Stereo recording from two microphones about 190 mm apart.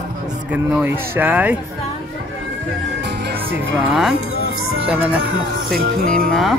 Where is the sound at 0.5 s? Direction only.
10° right (ahead or behind).